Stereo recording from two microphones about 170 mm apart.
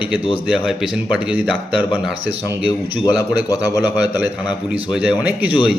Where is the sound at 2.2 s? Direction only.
35° right (ahead or behind).